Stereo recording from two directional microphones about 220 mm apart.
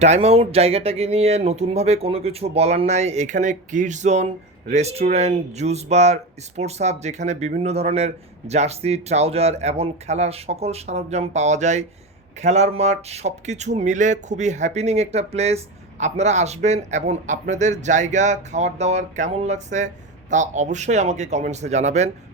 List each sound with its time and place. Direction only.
0.0 s speech: 30° right (ahead or behind)